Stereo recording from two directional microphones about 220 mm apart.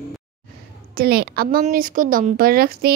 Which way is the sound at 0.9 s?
45° right (ahead or behind).